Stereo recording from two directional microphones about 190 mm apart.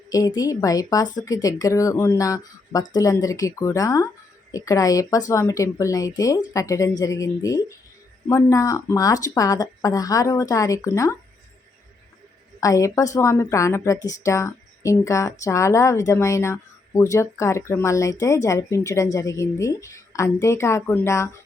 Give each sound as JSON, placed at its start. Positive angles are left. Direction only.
{"t": 0.1, "sound": "a woman's voice", "side_deg": 20}
{"t": 12.5, "sound": "a woman's voice", "side_deg": 15}